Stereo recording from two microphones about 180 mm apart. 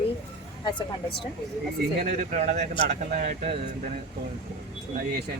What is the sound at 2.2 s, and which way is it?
Speech, 45° right (ahead or behind).